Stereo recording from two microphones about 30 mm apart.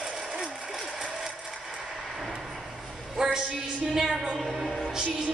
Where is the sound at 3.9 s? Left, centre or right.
Centre.